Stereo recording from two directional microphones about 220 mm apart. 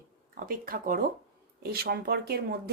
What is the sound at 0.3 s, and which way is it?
Speech, 40° right (ahead or behind).